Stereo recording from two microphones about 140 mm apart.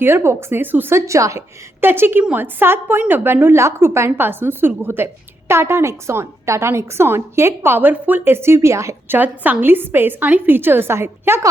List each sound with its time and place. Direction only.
0.0 s a woman's voice: 20° right (ahead or behind)